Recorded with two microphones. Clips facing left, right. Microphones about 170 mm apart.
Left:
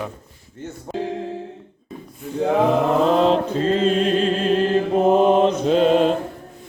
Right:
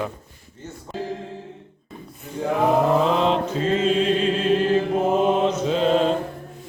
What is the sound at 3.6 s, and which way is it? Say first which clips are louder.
Mantra: left 2 dB; 35° left (ahead or behind).